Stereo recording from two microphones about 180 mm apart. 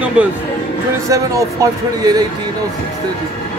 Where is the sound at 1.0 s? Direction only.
20° right (ahead or behind).